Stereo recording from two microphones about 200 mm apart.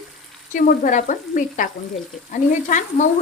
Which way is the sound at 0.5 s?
40° left (ahead or behind).